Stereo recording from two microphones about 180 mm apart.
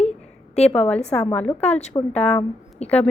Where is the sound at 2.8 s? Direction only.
35° left (ahead or behind).